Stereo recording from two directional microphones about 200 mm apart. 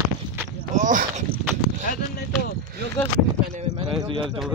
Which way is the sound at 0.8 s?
40° right (ahead or behind).